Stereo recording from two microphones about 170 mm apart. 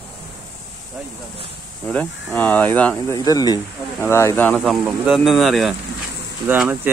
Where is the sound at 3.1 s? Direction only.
20° left (ahead or behind).